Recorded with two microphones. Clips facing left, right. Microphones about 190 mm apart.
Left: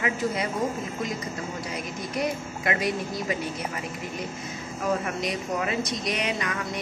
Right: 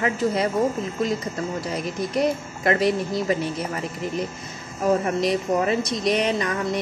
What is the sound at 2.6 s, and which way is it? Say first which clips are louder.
Speech: right 7 dB; 35° right (ahead or behind).